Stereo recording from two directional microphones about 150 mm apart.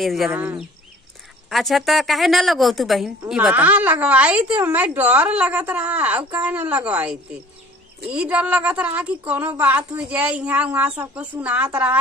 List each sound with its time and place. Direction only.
0.0 s a woman's voice: centre (ahead or behind)
0.3 s a woman's voice: 10° right (ahead or behind)
1.5 s a woman's voice: centre (ahead or behind)